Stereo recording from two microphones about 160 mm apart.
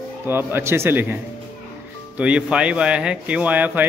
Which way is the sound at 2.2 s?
5° right (ahead or behind).